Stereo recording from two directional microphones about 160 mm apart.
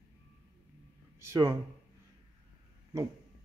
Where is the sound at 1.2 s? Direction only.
20° right (ahead or behind).